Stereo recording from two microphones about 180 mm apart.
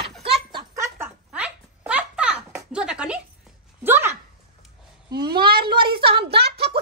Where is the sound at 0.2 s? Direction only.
25° right (ahead or behind).